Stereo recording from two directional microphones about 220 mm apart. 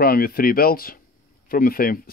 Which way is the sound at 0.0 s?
40° left (ahead or behind).